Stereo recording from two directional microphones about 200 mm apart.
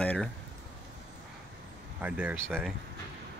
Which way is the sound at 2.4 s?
5° left (ahead or behind).